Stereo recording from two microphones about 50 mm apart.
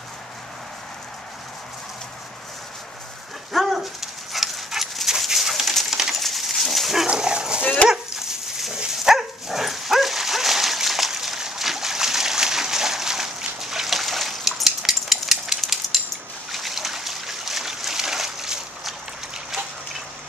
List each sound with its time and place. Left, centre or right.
3.5 s dog: centre
5.9 s bird: centre
6.2 s dog: centre
7.1 s dog: centre
7.6 s dog: left
7.9 s dog: centre
16.5 s a sound: centre